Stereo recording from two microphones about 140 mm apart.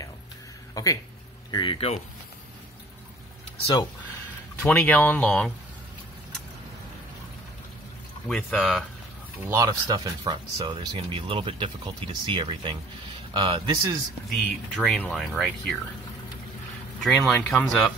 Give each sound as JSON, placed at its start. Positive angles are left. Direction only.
{"t": 0.8, "sound": "speech", "side_deg": 25}
{"t": 1.5, "sound": "speech", "side_deg": 35}
{"t": 4.6, "sound": "speech", "side_deg": 10}
{"t": 8.3, "sound": "speech", "side_deg": 5}
{"t": 9.5, "sound": "speech", "side_deg": -25}
{"t": 14.3, "sound": "speech", "side_deg": 0}
{"t": 17.3, "sound": "speech", "side_deg": 10}